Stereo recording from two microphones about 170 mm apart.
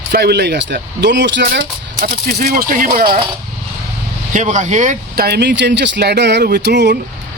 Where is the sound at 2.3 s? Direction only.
60° right (ahead or behind).